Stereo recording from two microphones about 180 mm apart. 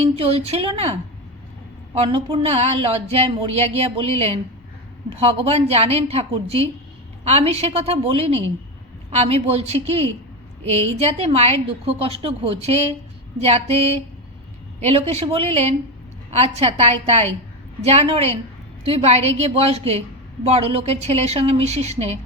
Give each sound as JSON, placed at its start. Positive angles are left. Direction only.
{"t": 0.0, "sound": "speech", "side_deg": -35}